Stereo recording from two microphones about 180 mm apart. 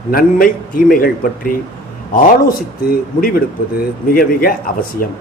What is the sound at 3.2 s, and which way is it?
A man's voice, 55° left (ahead or behind).